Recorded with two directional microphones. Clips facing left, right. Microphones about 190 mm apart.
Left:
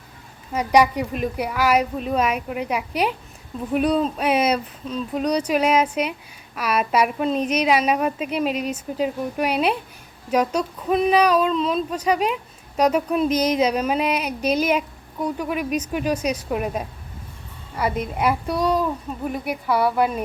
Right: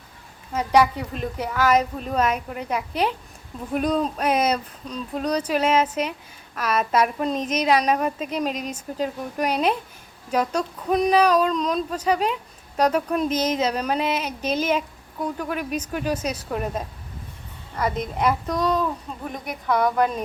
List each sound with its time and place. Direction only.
0.5 s speech: 15° left (ahead or behind)
10.8 s speech: 5° left (ahead or behind)